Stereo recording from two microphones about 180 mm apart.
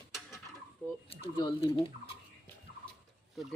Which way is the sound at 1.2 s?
30° left (ahead or behind).